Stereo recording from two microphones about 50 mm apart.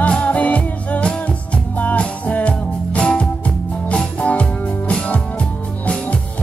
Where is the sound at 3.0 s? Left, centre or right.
Centre.